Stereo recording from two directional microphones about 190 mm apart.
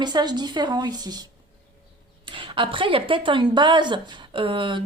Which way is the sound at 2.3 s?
25° right (ahead or behind).